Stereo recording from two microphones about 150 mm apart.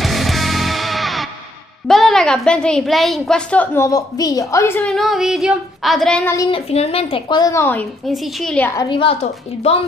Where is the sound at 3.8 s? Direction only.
25° left (ahead or behind).